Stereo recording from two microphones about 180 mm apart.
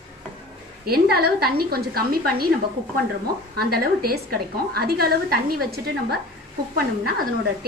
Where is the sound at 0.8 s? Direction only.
60° right (ahead or behind).